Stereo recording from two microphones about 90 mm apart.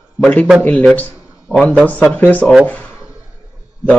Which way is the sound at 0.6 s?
15° left (ahead or behind).